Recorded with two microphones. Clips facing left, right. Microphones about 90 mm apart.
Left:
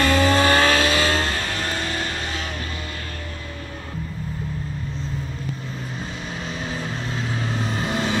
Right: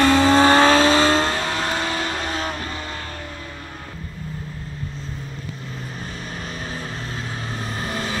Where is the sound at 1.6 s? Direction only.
90° right.